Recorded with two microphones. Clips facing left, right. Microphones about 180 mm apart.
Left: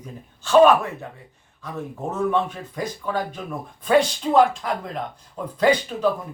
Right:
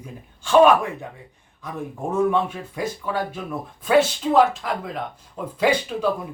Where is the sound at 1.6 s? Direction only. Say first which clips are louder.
Right 1 dB; 10° right (ahead or behind).